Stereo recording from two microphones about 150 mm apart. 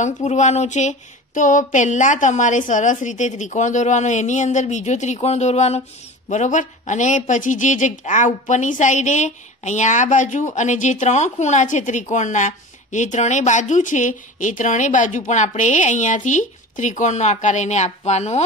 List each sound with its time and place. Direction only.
0.0 s speech: 50° left (ahead or behind)